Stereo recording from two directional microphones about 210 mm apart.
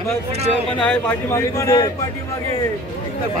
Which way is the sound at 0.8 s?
10° left (ahead or behind).